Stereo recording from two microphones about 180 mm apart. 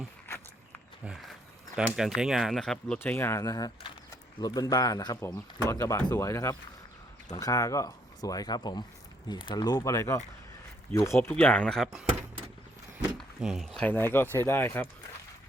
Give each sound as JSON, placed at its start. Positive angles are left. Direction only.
{"t": 1.0, "sound": "speech", "side_deg": 0}
{"t": 11.2, "sound": "speech", "side_deg": 5}
{"t": 13.1, "sound": "speech", "side_deg": 0}
{"t": 13.8, "sound": "speech", "side_deg": 10}